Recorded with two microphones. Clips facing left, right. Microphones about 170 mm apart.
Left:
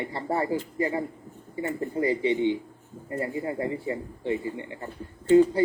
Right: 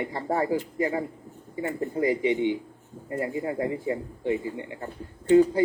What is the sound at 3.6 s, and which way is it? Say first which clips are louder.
A man's voice: right 2 dB; 15° right (ahead or behind).